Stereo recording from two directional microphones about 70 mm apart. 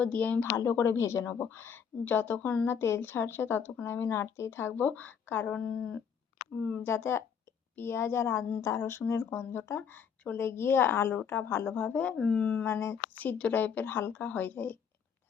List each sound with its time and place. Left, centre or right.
0.0 s speech: centre
0.5 s speech: left
2.6 s speech: left
5.5 s speech: centre
6.8 s speech: left